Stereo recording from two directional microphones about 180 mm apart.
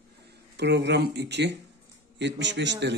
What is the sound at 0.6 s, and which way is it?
A man's voice, 70° right (ahead or behind).